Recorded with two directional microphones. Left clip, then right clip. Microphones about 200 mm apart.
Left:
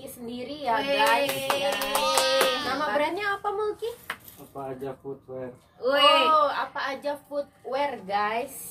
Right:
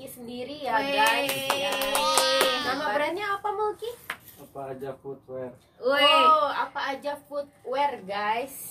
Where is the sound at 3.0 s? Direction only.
5° right (ahead or behind).